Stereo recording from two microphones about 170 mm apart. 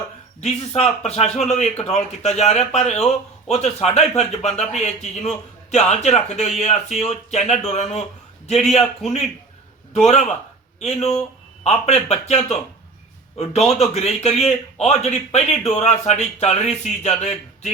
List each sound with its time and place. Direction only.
0.4 s a man's voice: 40° left (ahead or behind)
9.9 s a man's voice: 40° left (ahead or behind)
13.9 s a man's voice: 40° left (ahead or behind)